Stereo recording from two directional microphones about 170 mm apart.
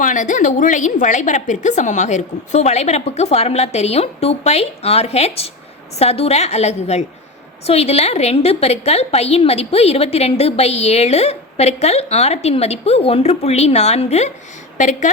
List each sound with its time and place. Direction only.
0.0 s a woman's voice: 50° left (ahead or behind)